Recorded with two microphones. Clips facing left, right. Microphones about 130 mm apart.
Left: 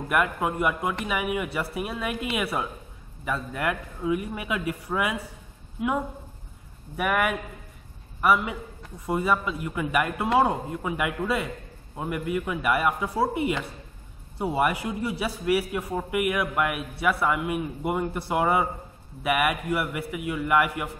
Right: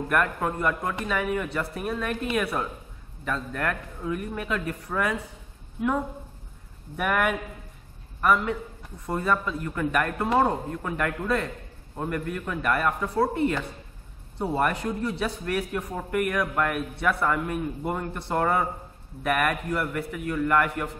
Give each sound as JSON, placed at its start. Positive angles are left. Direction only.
{"t": 0.1, "sound": "a man's voice", "side_deg": 10}